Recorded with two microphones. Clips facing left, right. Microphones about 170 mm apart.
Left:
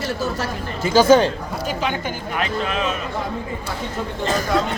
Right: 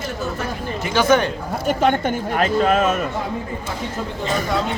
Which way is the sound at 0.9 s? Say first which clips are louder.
Left 4 dB; 25° left (ahead or behind).